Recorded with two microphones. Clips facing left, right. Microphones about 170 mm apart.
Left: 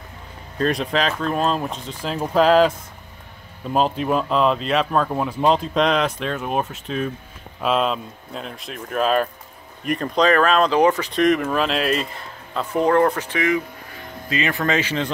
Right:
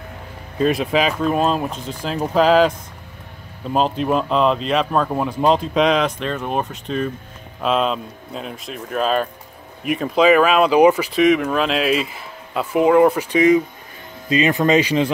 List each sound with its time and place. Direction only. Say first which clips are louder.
0.6 s speech: right 3 dB; 5° right (ahead or behind)
3.7 s speech: right 1 dB; centre (ahead or behind)